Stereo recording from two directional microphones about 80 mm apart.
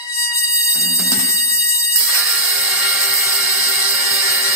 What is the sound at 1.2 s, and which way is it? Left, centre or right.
Music, left.